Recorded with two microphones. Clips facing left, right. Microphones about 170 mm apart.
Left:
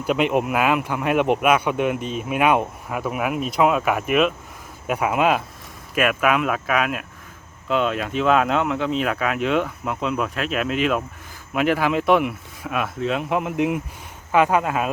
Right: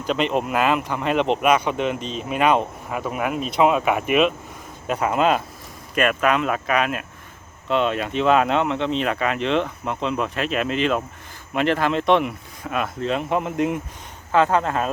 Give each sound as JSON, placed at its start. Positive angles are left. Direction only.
{"t": 0.0, "sound": "speech", "side_deg": 10}